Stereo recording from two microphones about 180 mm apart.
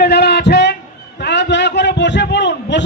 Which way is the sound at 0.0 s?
65° left (ahead or behind).